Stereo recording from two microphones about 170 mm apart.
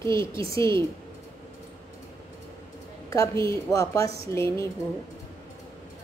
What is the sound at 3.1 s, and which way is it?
A woman's voice, 20° left (ahead or behind).